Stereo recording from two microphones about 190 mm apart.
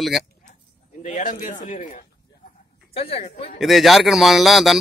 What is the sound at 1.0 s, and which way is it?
Speech, 40° left (ahead or behind).